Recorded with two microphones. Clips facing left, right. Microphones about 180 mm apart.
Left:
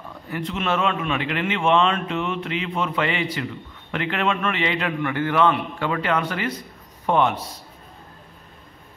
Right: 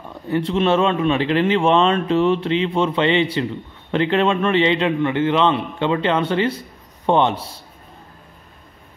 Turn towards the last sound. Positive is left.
turn(degrees=-30)  # may be behind; listen again after turning